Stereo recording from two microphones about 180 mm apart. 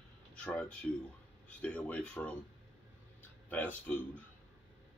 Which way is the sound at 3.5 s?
10° left (ahead or behind).